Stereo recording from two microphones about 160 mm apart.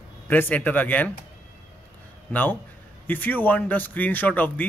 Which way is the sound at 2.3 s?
10° left (ahead or behind).